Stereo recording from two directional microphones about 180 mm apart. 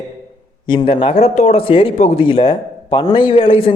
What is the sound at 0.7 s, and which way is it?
A man's voice, 25° left (ahead or behind).